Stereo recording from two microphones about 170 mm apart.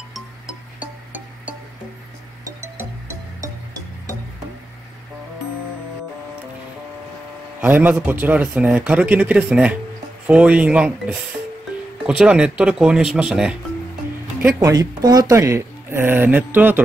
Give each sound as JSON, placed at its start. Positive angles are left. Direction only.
{"t": 0.1, "sound": "music", "side_deg": -5}
{"t": 7.6, "sound": "speech", "side_deg": -10}
{"t": 14.6, "sound": "speech", "side_deg": -20}